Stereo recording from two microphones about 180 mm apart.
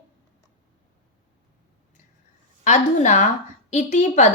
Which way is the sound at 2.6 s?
40° left (ahead or behind).